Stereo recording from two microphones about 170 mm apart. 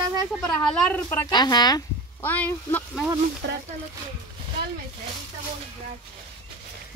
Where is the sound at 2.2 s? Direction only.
10° left (ahead or behind).